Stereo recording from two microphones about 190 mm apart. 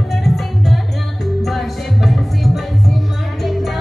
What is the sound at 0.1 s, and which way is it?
Music, centre (ahead or behind).